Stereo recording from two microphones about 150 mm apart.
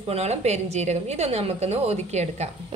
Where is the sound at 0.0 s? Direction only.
45° right (ahead or behind).